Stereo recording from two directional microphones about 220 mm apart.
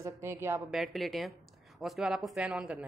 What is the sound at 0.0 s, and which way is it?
Speech, 10° right (ahead or behind).